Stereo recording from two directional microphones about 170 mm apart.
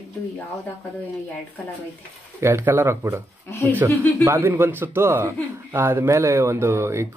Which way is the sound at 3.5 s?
15° left (ahead or behind).